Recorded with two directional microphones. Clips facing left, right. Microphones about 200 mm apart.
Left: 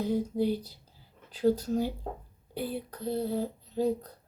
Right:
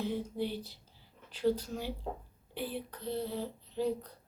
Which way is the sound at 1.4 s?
40° left (ahead or behind).